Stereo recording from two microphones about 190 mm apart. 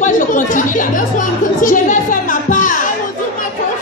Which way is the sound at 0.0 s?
45° left (ahead or behind).